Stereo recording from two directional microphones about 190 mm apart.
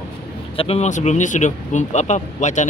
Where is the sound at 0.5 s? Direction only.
35° left (ahead or behind).